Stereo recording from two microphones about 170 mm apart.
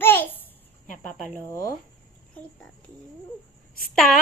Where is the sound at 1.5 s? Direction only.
15° left (ahead or behind).